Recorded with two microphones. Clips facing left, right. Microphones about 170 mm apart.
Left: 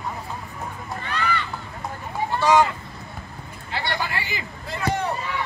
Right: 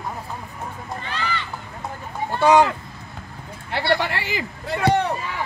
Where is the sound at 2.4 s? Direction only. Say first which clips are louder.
Right 3 dB; 65° right (ahead or behind).